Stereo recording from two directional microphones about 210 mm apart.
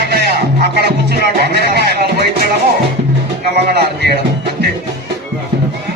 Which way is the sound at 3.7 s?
50° right (ahead or behind).